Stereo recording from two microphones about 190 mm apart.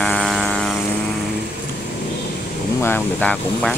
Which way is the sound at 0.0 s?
5° left (ahead or behind).